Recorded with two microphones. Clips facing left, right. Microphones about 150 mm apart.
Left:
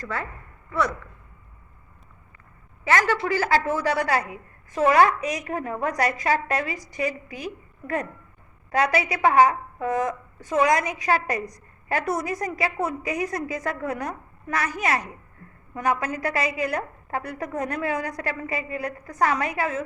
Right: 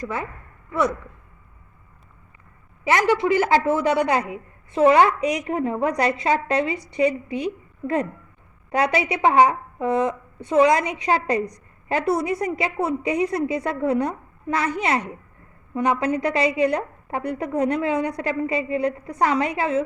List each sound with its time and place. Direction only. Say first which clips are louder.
0.0 s a woman's voice: right 3 dB; 15° right (ahead or behind)
2.8 s a woman's voice: right 3 dB; 20° right (ahead or behind)